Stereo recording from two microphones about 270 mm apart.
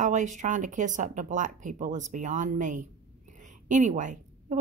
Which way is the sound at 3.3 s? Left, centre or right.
Right.